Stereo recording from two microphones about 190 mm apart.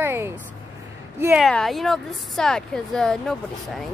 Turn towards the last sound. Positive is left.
turn(degrees=0)  # may be behind; listen again after turning